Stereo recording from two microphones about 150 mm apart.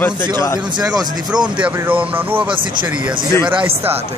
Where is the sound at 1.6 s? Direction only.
10° right (ahead or behind).